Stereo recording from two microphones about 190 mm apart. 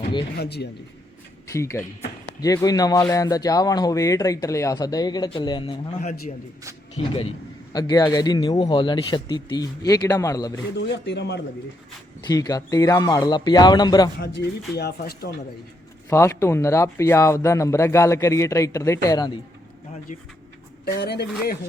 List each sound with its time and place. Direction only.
0.0 s a sound: 25° left (ahead or behind)
0.3 s speech: 60° left (ahead or behind)
1.5 s a man's voice: 15° left (ahead or behind)
6.0 s a man's voice: 40° left (ahead or behind); by 10.6 s 20° left (ahead or behind)
10.8 s speech: 65° left (ahead or behind)
12.2 s a man's voice: 20° left (ahead or behind)
14.2 s speech: 60° left (ahead or behind)
16.0 s speech: 15° left (ahead or behind)
20.8 s speech: 60° left (ahead or behind)